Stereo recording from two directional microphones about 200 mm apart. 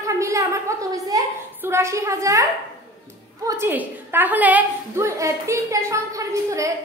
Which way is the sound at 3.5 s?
10° right (ahead or behind).